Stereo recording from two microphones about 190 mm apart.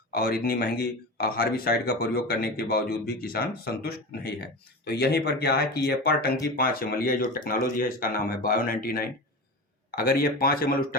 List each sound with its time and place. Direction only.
0.1 s speech: 55° left (ahead or behind)